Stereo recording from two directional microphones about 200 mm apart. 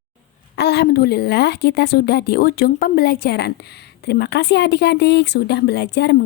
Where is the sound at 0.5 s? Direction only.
55° left (ahead or behind).